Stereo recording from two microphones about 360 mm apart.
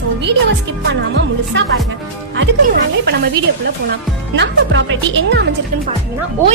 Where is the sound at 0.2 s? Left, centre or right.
Right.